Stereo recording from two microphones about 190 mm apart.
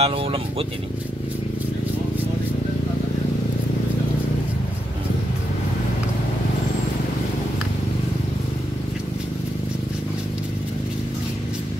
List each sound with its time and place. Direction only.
0.0 s speech: 30° right (ahead or behind)